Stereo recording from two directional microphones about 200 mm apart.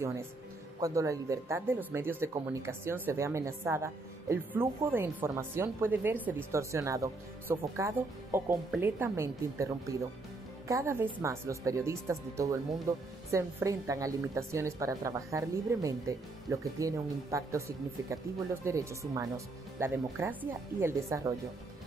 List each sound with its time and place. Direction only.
0.7 s speech: 15° right (ahead or behind)